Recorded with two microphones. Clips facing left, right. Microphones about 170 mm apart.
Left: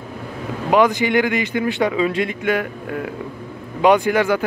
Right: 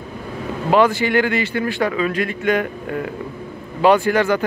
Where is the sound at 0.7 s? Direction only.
15° left (ahead or behind).